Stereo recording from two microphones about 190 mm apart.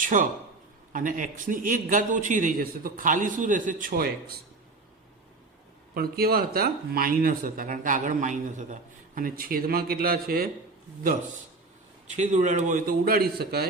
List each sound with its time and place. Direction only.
0.0 s a man's voice: 45° right (ahead or behind)
5.9 s speech: 55° right (ahead or behind)
12.0 s speech: 40° right (ahead or behind); by 13.7 s 55° right (ahead or behind)